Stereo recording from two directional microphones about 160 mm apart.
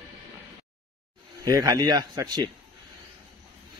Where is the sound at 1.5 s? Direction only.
20° right (ahead or behind).